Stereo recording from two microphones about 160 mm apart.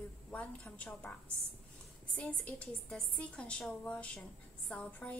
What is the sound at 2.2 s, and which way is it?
A woman's voice, 10° left (ahead or behind).